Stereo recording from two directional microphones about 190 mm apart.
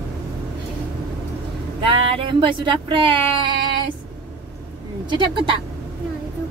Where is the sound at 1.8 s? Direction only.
30° right (ahead or behind).